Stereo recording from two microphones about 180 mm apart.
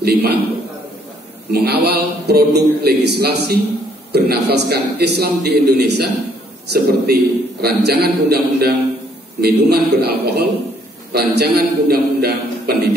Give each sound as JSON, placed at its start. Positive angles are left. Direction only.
{"t": 0.0, "sound": "a man's voice", "side_deg": -60}
{"t": 1.5, "sound": "a man's voice", "side_deg": -65}